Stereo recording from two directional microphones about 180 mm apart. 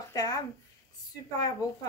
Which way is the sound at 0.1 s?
20° left (ahead or behind).